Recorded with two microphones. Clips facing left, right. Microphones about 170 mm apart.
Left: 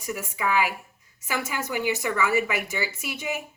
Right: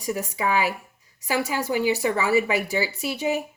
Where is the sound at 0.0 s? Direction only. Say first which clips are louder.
Right 3 dB; 35° right (ahead or behind).